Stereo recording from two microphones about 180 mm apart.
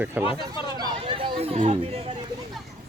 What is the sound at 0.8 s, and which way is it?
Chatter, 25° right (ahead or behind).